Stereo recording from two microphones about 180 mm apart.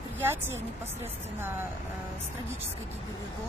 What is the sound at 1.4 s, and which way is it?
Speech, 10° right (ahead or behind).